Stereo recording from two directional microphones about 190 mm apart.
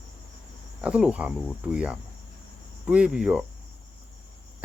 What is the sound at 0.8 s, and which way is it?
Speech, 5° right (ahead or behind).